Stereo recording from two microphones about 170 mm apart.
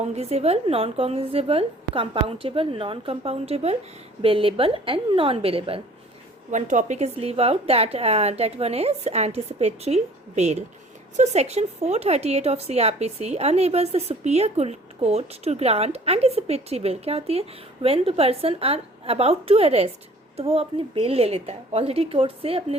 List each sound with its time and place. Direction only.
0.0 s speech: 40° right (ahead or behind)
6.5 s speech: 45° right (ahead or behind)